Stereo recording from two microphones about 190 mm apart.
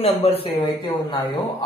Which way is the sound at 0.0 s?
30° left (ahead or behind).